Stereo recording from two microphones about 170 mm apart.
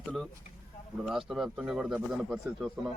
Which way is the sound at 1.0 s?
Centre (ahead or behind).